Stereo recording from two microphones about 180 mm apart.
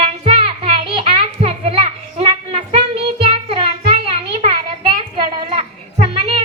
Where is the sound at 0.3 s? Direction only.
30° right (ahead or behind).